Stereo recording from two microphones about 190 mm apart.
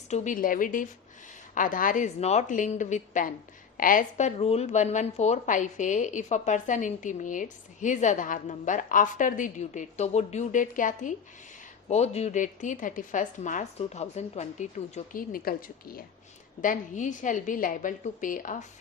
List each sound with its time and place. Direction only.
0.1 s a woman's voice: 45° left (ahead or behind)